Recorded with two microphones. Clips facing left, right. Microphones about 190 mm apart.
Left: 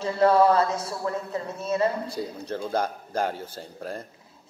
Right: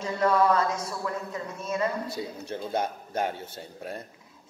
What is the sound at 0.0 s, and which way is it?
A man's voice, 30° left (ahead or behind).